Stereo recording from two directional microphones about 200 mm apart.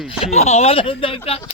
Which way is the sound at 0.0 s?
5° right (ahead or behind).